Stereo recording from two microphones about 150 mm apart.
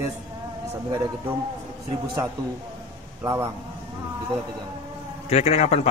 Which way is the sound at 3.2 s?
20° right (ahead or behind).